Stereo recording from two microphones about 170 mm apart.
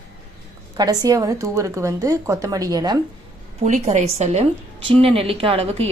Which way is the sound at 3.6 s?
45° right (ahead or behind).